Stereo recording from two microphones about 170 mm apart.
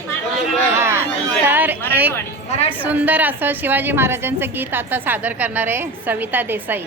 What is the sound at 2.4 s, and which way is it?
Speech, 40° left (ahead or behind).